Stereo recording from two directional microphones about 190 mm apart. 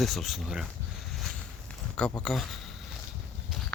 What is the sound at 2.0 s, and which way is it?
Speech, 5° left (ahead or behind).